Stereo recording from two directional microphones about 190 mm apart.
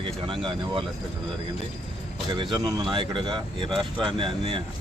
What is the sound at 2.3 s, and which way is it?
Speech, 25° right (ahead or behind).